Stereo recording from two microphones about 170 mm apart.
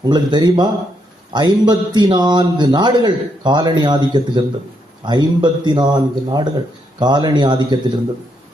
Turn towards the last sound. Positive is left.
turn(degrees=-25)  # may be behind; listen again after turning